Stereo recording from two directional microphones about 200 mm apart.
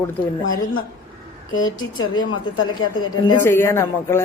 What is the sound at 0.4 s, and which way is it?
Speech, 80° left.